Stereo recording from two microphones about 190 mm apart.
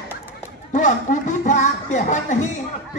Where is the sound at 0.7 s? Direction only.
40° left (ahead or behind).